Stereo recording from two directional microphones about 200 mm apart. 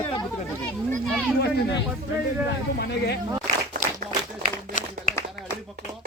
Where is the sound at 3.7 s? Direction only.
40° right (ahead or behind).